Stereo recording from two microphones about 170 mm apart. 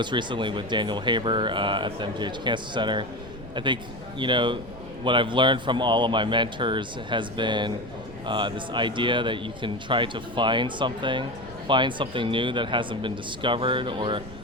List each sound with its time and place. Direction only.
0.0 s a man's voice: 25° right (ahead or behind)